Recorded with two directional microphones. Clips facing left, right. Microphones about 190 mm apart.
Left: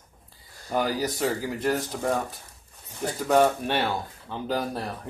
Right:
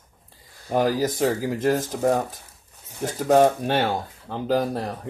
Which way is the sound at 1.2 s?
40° right (ahead or behind).